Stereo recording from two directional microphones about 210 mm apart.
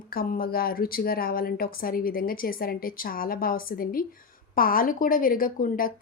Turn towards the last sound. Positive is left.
turn(degrees=40)  # may be behind; listen again after turning